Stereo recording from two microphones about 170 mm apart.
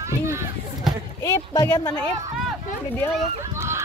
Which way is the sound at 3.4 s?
15° right (ahead or behind).